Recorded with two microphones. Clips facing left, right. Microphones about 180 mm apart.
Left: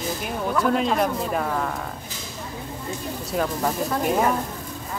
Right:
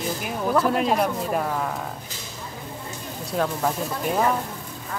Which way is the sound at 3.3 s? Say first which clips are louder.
Even; centre (ahead or behind).